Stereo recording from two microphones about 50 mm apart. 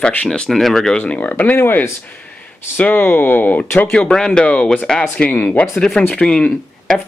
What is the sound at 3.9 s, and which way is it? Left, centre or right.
Speech, centre.